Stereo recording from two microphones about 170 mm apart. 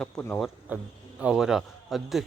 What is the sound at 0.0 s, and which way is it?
A man's voice, 5° left (ahead or behind).